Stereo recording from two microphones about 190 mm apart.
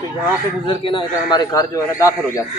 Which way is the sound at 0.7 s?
25° left (ahead or behind).